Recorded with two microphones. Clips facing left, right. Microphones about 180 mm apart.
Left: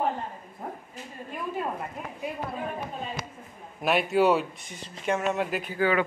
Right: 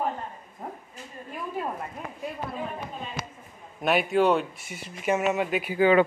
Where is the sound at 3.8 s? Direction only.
Centre (ahead or behind).